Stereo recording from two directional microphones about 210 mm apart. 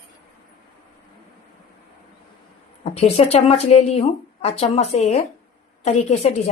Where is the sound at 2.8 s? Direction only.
30° left (ahead or behind).